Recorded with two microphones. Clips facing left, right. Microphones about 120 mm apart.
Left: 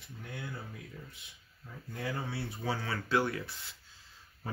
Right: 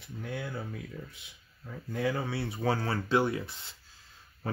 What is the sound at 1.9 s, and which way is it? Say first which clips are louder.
Speech: right 6 dB; 90° right.